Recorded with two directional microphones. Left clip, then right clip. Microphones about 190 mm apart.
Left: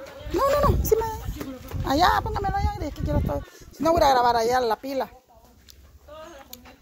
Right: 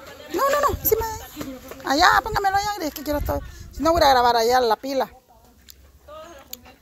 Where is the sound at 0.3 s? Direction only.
20° left (ahead or behind).